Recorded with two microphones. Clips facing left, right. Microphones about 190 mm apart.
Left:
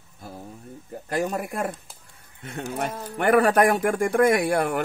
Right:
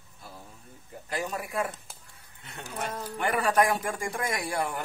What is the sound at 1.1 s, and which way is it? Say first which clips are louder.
Speech: left 7 dB; 50° left (ahead or behind).